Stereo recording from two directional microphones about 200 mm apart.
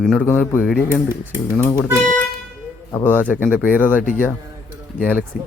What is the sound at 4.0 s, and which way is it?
Speech, 45° left (ahead or behind).